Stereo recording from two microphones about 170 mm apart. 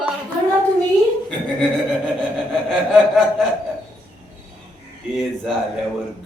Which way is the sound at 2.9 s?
Centre (ahead or behind).